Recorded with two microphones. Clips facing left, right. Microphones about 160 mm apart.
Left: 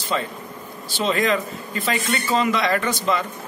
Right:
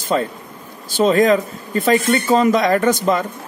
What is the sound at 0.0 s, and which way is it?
Speech, 45° right (ahead or behind).